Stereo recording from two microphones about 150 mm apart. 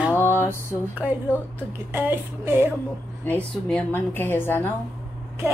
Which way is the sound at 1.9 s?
15° right (ahead or behind).